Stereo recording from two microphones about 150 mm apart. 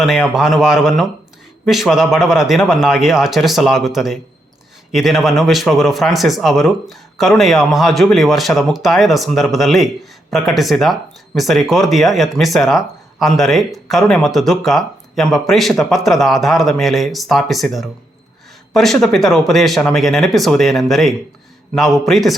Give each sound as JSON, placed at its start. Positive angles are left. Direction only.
{"t": 0.0, "sound": "speech", "side_deg": 0}